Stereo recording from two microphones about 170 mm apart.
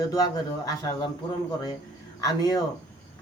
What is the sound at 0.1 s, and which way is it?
A man's voice, 20° left (ahead or behind).